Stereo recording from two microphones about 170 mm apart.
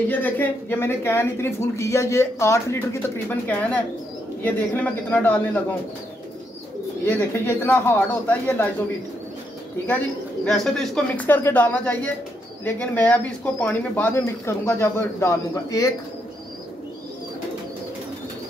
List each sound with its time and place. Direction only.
0.1 s speech: 10° left (ahead or behind)
7.1 s speech: 10° left (ahead or behind)
9.8 s speech: 10° left (ahead or behind)